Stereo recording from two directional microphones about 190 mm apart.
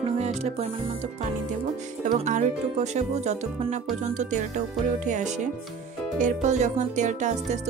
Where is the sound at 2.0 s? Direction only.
40° right (ahead or behind).